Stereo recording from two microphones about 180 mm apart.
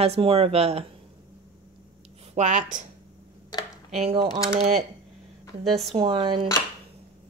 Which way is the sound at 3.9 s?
35° right (ahead or behind).